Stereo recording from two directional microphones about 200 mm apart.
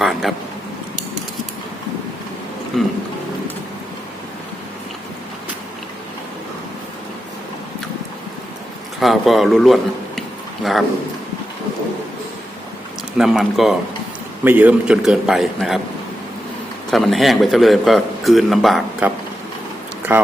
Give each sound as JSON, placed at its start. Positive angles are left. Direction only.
{"t": 0.0, "sound": "a sound", "side_deg": 0}
{"t": 2.7, "sound": "speech", "side_deg": 0}
{"t": 9.0, "sound": "a man's voice", "side_deg": 0}
{"t": 13.1, "sound": "a man's voice", "side_deg": 0}
{"t": 16.9, "sound": "a man's voice", "side_deg": 0}